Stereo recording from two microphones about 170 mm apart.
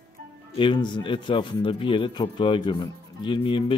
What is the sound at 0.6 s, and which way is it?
Speech, 25° left (ahead or behind).